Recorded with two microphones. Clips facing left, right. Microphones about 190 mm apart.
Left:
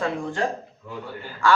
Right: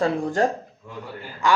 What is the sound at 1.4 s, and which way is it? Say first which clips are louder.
Speech: even; 20° right (ahead or behind).